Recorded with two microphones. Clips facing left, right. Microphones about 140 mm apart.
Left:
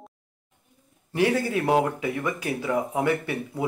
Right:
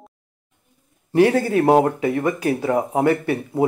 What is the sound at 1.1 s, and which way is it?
Speech, 55° right (ahead or behind).